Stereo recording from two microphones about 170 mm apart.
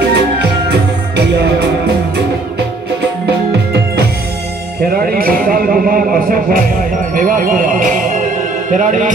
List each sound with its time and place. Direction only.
0.1 s music: 75° right (ahead or behind)
4.9 s a sound: 60° right (ahead or behind)
7.2 s music: 50° right (ahead or behind)
8.6 s a man's voice: 45° right (ahead or behind)